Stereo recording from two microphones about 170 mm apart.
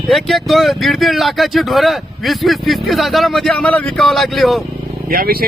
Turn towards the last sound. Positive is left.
turn(degrees=-60)  # may be behind; listen again after turning